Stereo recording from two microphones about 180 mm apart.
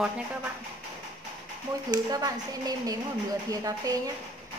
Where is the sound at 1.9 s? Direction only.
20° right (ahead or behind).